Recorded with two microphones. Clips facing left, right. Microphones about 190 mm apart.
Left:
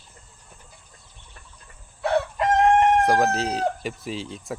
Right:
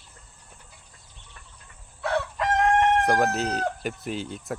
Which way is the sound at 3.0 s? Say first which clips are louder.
Left 2 dB; centre (ahead or behind).